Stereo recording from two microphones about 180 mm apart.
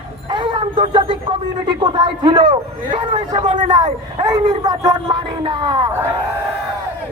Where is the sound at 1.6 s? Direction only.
25° right (ahead or behind).